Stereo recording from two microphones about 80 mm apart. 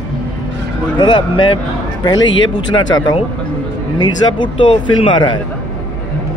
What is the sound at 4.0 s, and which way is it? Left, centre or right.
Speech, left.